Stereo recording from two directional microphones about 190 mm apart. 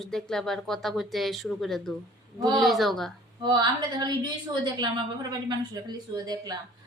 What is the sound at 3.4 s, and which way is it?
A woman's voice, 20° right (ahead or behind).